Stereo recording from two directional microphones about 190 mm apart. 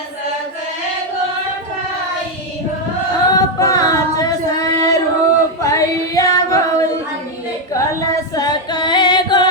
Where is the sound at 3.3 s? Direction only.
20° left (ahead or behind).